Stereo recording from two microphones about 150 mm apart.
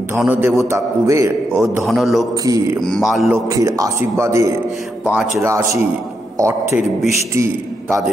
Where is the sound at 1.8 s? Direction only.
Centre (ahead or behind).